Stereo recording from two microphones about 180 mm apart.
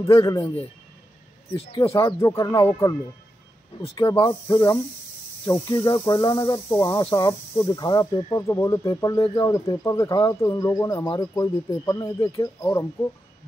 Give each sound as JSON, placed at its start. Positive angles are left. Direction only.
{"t": 0.0, "sound": "speech", "side_deg": 20}
{"t": 2.0, "sound": "speech", "side_deg": 15}
{"t": 4.3, "sound": "speech", "side_deg": 25}